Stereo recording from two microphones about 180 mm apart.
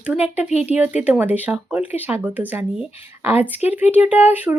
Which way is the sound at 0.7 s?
10° right (ahead or behind).